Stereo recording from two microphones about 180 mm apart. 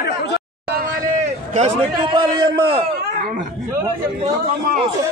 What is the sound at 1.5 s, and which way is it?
Speech, 35° right (ahead or behind).